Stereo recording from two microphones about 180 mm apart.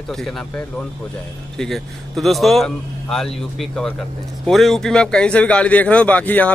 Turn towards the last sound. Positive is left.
turn(degrees=10)  # may be behind; listen again after turning